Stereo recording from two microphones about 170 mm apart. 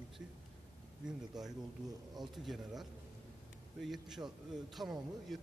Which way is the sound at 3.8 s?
Centre (ahead or behind).